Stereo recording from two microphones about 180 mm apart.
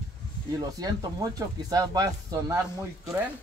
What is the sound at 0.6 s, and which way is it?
Speech, 20° right (ahead or behind).